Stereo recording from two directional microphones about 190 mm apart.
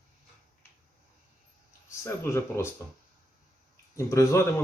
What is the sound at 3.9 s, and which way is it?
Speech, 15° left (ahead or behind).